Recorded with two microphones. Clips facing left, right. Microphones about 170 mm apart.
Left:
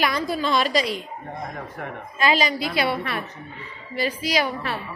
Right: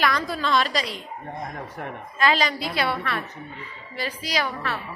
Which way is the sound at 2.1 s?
10° left (ahead or behind).